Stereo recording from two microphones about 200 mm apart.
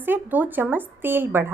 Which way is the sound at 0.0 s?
10° right (ahead or behind).